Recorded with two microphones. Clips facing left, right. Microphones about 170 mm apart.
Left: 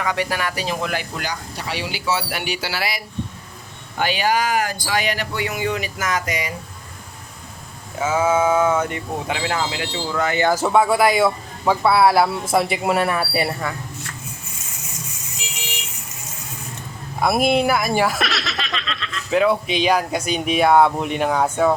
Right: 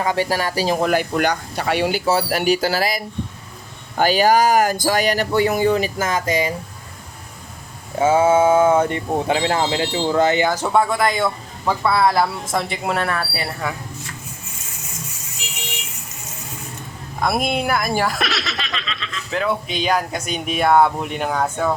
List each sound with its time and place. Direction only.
0.0 s speech: 30° right (ahead or behind)
7.9 s speech: 30° right (ahead or behind)
10.5 s speech: 5° left (ahead or behind)
17.2 s speech: 5° left (ahead or behind)